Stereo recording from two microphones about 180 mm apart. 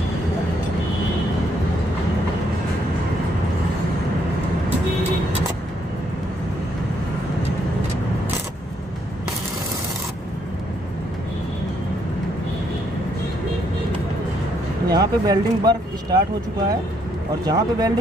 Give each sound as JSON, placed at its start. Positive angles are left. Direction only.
{"t": 14.9, "sound": "speech", "side_deg": -20}
{"t": 17.5, "sound": "speech", "side_deg": -20}